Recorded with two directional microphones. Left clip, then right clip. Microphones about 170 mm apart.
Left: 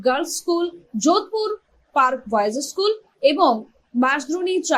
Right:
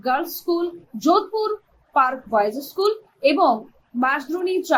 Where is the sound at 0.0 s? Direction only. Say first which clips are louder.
Left 2 dB; 35° left (ahead or behind).